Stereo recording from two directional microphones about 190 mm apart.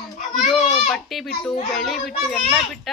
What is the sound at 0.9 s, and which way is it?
A woman's voice, centre (ahead or behind).